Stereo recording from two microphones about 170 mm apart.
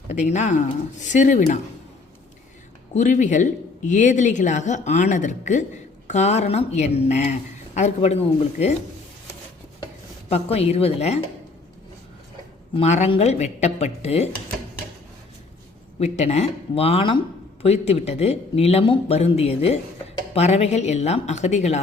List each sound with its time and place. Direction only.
0.1 s speech: 45° left (ahead or behind)
2.9 s speech: 45° left (ahead or behind)
10.2 s speech: 35° left (ahead or behind)
12.7 s speech: 40° left (ahead or behind)
16.0 s speech: 40° left (ahead or behind)